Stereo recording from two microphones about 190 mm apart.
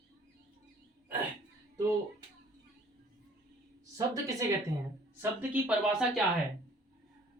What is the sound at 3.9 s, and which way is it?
Speech, 15° right (ahead or behind).